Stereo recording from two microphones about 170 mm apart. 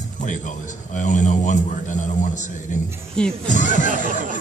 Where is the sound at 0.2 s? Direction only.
50° left (ahead or behind).